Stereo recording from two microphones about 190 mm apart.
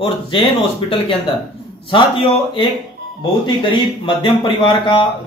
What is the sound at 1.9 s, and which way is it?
Speech, 25° left (ahead or behind).